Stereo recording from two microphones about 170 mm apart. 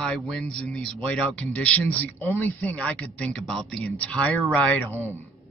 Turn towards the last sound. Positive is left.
turn(degrees=10)  # may be behind; listen again after turning